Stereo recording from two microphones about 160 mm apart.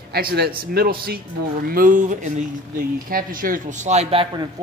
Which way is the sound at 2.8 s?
65° right (ahead or behind).